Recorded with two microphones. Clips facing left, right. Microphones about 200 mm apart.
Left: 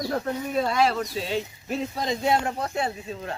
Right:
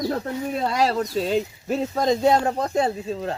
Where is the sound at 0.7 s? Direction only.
40° right (ahead or behind).